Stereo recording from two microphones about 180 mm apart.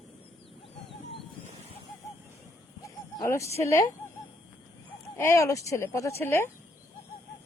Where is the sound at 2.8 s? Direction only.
15° left (ahead or behind).